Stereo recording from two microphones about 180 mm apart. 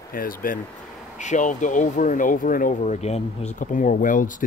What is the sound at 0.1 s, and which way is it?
Speech, 50° left (ahead or behind).